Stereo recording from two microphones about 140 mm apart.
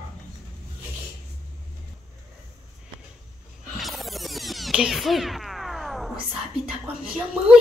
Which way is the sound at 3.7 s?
Centre (ahead or behind).